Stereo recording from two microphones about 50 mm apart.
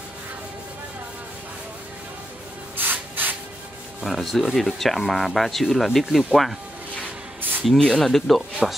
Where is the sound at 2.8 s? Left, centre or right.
Right.